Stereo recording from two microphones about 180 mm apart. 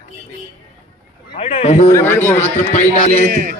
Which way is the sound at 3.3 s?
55° right (ahead or behind).